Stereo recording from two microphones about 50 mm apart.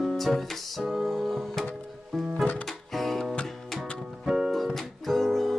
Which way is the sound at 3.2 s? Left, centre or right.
Centre.